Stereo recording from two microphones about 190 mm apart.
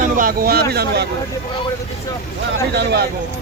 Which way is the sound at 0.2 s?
50° right (ahead or behind).